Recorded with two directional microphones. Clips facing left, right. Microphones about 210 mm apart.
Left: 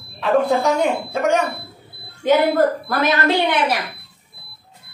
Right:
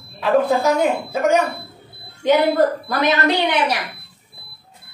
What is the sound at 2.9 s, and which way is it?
Speech, 15° right (ahead or behind).